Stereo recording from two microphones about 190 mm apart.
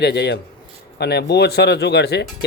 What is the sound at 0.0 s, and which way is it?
A man's voice, 60° left (ahead or behind).